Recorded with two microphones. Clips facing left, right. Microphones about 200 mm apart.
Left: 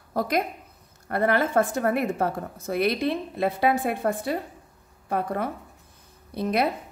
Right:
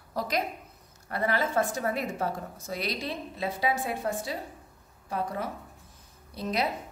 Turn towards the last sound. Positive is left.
turn(degrees=60)  # may be behind; listen again after turning